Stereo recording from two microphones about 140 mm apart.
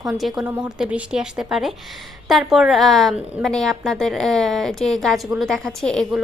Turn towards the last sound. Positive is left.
turn(degrees=5)  # may be behind; listen again after turning